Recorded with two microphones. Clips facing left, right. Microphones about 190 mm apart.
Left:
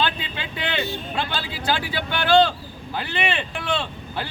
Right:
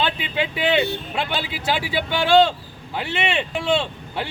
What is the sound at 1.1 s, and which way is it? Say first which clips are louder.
Speech: right 2 dB; 25° right (ahead or behind).